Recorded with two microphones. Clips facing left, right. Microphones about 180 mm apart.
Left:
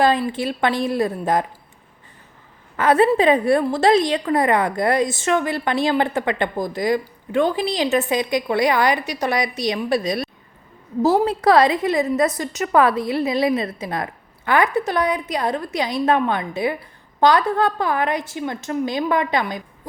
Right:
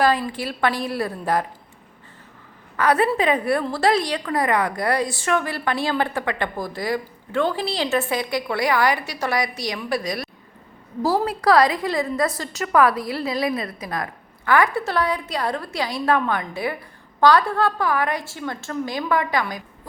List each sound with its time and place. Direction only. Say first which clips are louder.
0.0 s a woman's voice: left 2 dB; 25° left (ahead or behind)
2.7 s a woman's voice: left 4 dB; 25° left (ahead or behind)